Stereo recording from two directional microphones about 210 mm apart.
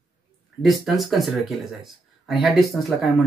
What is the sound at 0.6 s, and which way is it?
Speech, centre (ahead or behind).